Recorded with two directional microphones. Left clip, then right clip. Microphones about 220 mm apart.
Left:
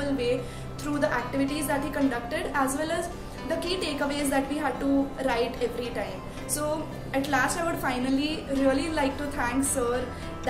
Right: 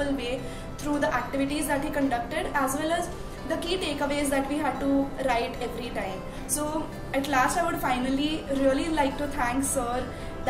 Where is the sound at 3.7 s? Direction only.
15° left (ahead or behind).